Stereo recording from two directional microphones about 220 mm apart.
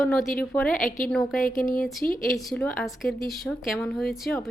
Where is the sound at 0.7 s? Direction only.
40° left (ahead or behind).